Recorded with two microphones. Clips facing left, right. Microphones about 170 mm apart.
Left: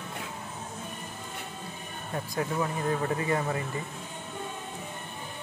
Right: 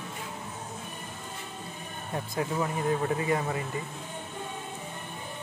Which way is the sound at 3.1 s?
20° right (ahead or behind).